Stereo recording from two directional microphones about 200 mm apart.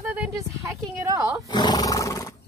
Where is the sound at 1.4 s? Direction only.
20° left (ahead or behind).